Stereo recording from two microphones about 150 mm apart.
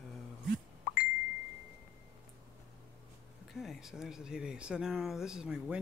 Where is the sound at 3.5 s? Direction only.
Centre (ahead or behind).